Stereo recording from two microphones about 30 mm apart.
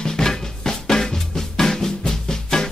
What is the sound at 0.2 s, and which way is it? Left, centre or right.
Music, centre.